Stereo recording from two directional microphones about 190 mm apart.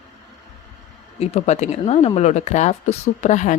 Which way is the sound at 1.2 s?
35° left (ahead or behind).